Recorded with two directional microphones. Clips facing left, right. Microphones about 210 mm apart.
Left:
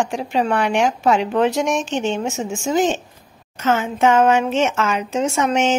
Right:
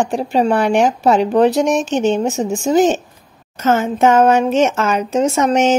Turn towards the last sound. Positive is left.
turn(degrees=-40)  # may be behind; listen again after turning